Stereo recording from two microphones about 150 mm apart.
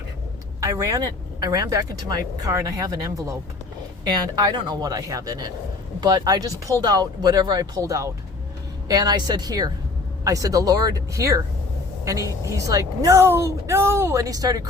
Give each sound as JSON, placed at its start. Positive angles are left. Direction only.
{"t": 0.6, "sound": "speech", "side_deg": -20}
{"t": 4.4, "sound": "speech", "side_deg": -25}